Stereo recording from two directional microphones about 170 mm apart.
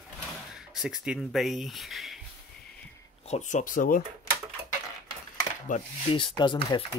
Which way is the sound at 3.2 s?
45° left (ahead or behind).